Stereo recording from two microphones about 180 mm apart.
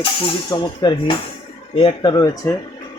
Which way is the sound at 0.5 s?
25° left (ahead or behind).